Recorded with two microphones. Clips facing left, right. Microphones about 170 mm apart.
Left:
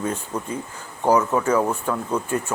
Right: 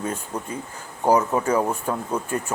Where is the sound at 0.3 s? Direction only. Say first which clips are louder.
Left 2 dB; 35° right (ahead or behind).